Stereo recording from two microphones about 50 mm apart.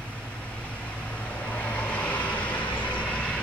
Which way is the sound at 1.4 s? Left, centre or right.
Left.